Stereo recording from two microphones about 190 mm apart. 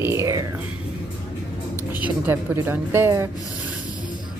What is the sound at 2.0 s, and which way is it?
Speech, 10° right (ahead or behind).